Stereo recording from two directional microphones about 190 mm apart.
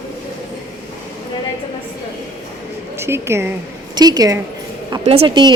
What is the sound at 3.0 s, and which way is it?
A woman's voice, 15° right (ahead or behind).